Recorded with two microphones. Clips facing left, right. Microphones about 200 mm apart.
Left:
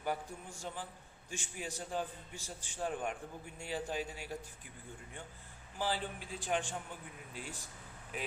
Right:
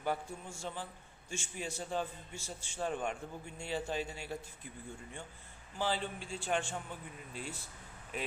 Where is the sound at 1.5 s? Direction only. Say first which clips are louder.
Right 2 dB; 10° left (ahead or behind).